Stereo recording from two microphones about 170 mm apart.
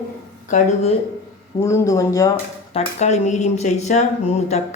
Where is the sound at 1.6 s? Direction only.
20° left (ahead or behind).